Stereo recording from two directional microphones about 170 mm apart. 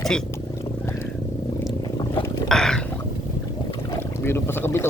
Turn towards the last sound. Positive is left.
turn(degrees=15)  # may be behind; listen again after turning